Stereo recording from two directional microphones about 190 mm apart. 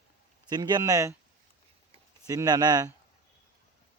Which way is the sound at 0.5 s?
20° right (ahead or behind).